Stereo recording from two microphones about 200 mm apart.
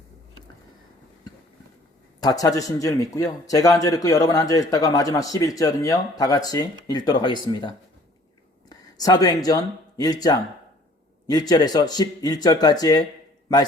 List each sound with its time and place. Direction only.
2.2 s a man's voice: 15° left (ahead or behind)
8.7 s speech: 20° left (ahead or behind)